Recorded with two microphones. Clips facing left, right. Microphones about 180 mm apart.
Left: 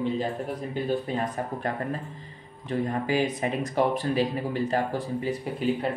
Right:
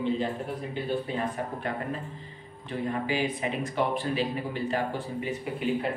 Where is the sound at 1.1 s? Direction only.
40° left (ahead or behind).